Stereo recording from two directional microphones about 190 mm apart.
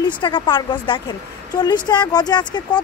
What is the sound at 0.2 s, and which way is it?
Speech, 25° left (ahead or behind).